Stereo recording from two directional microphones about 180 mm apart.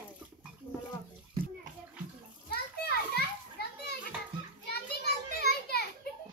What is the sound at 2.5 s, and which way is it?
Children playing, 60° left (ahead or behind).